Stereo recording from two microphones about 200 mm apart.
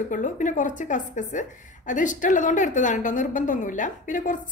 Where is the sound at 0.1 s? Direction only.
40° left (ahead or behind).